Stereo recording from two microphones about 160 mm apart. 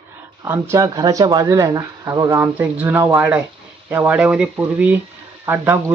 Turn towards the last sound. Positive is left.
turn(degrees=-15)  # may be behind; listen again after turning